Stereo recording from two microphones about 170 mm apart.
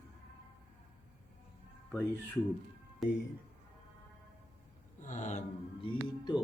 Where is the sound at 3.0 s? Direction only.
Centre (ahead or behind).